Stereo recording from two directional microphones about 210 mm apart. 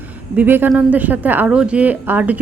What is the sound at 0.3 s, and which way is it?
A woman's voice, 10° right (ahead or behind).